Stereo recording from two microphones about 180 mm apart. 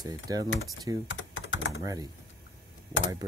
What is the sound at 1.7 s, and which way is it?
Speech, 20° right (ahead or behind).